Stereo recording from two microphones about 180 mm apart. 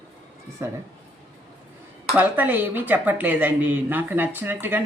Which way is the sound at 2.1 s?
10° right (ahead or behind).